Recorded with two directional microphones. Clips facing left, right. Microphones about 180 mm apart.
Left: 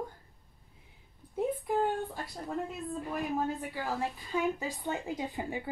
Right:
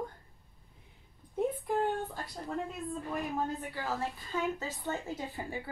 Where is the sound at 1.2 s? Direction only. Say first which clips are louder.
Left 1 dB; 5° left (ahead or behind).